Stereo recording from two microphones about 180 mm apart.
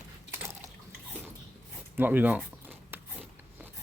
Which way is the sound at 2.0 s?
10° right (ahead or behind).